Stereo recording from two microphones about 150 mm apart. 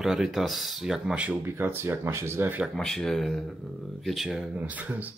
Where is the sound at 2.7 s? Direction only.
5° left (ahead or behind).